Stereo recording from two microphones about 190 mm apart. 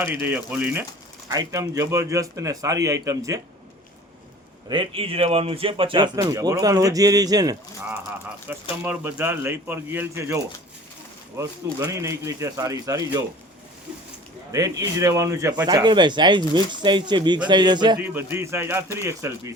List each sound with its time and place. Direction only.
0.0 s a man's voice: 10° right (ahead or behind)
4.7 s speech: 30° right (ahead or behind)
8.7 s a man's voice: 10° right (ahead or behind)
14.5 s speech: 20° right (ahead or behind)
18.0 s a man's voice: 10° right (ahead or behind)